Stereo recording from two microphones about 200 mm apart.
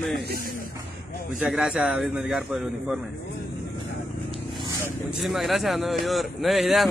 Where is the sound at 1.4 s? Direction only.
5° right (ahead or behind).